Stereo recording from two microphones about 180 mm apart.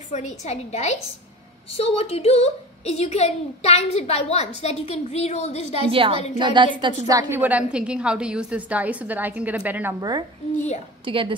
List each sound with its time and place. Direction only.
0.1 s a woman's voice: 40° left (ahead or behind)
5.9 s a woman's voice: 30° right (ahead or behind); by 9.9 s 10° right (ahead or behind)
9.9 s a woman's voice: 25° right (ahead or behind)